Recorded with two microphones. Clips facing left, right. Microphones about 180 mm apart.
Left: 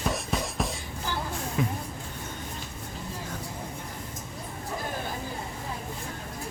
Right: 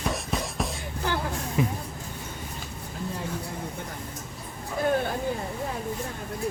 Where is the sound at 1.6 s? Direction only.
15° right (ahead or behind).